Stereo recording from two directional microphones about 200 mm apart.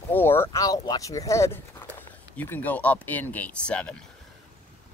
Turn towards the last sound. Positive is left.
turn(degrees=5)  # may be behind; listen again after turning